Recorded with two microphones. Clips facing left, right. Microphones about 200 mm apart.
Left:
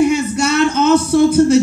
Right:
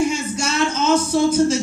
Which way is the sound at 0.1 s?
60° left (ahead or behind).